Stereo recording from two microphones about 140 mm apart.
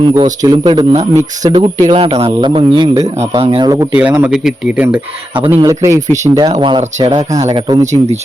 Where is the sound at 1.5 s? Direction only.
40° right (ahead or behind).